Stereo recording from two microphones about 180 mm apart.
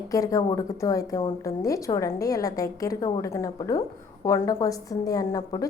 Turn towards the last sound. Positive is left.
turn(degrees=20)  # may be behind; listen again after turning